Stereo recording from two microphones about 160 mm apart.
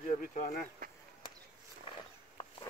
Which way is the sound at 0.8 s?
70° right (ahead or behind).